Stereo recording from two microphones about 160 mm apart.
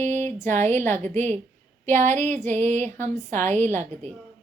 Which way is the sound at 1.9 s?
45° right (ahead or behind).